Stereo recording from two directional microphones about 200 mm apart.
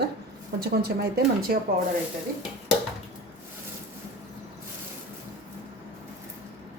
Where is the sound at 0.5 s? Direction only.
50° right (ahead or behind).